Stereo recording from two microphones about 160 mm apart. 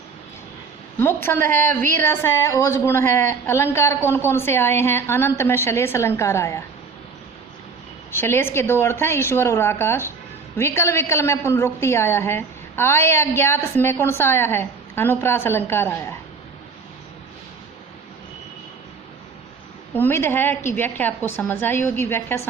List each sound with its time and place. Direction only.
0.9 s a woman's voice: 15° left (ahead or behind)
8.1 s a woman's voice: 15° left (ahead or behind)
19.9 s a woman's voice: 15° left (ahead or behind)